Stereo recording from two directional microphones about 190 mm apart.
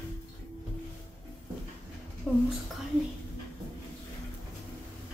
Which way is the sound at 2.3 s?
Centre (ahead or behind).